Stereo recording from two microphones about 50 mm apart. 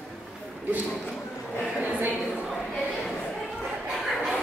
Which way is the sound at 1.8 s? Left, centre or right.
Right.